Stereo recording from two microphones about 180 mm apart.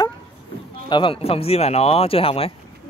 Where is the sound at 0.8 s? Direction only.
25° left (ahead or behind).